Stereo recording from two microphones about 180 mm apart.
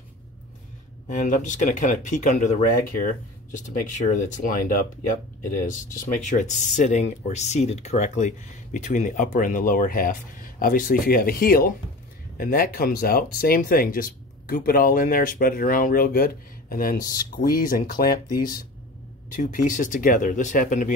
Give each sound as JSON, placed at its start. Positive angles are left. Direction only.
{"t": 1.0, "sound": "speech", "side_deg": 45}
{"t": 6.2, "sound": "speech", "side_deg": 40}